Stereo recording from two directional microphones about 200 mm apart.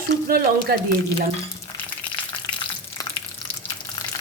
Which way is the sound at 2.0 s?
5° left (ahead or behind).